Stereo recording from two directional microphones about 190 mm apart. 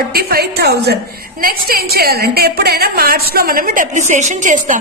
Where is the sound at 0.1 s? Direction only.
50° right (ahead or behind).